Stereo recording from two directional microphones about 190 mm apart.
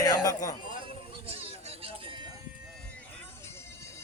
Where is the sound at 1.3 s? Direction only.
30° right (ahead or behind).